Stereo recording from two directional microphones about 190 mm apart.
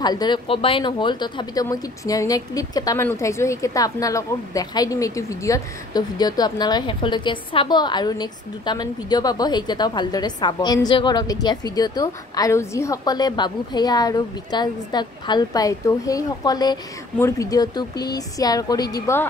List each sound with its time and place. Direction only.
0.0 s speech: 20° left (ahead or behind)